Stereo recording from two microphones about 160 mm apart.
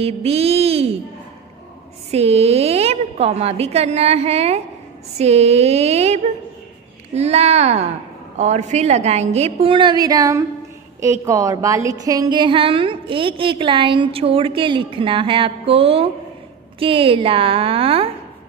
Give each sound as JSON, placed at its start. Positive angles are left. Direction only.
{"t": 0.0, "sound": "a woman's voice", "side_deg": -40}
{"t": 2.0, "sound": "a woman's voice", "side_deg": -40}